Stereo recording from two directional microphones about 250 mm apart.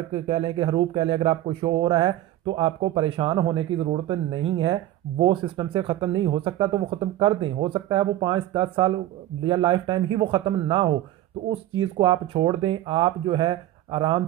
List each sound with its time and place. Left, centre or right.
0.1 s speech: right
12.0 s speech: centre